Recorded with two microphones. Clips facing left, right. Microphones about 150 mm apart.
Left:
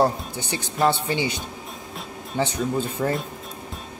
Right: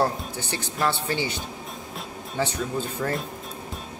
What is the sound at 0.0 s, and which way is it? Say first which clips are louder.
A man's voice: left 3 dB; 15° left (ahead or behind).